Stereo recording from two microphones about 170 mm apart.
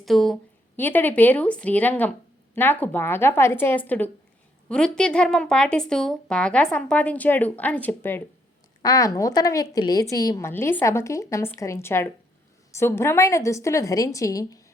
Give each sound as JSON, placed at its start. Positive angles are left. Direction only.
{"t": 0.0, "sound": "a woman's voice", "side_deg": 0}
{"t": 0.8, "sound": "a woman's voice", "side_deg": 10}
{"t": 8.8, "sound": "a woman's voice", "side_deg": 20}